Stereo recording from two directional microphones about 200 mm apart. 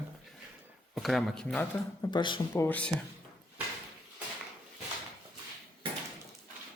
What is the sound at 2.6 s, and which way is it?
Speech, 5° left (ahead or behind).